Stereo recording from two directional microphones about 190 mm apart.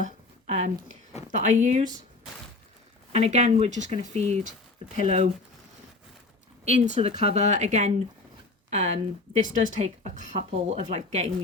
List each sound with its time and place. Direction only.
0.0 s a sound: 40° right (ahead or behind)
1.3 s a woman's voice: 40° right (ahead or behind)
3.1 s a woman's voice: 35° right (ahead or behind)
7.2 s a woman's voice: 35° right (ahead or behind)